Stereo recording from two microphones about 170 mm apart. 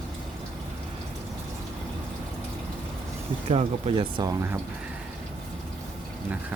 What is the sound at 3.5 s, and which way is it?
Speech, 35° right (ahead or behind).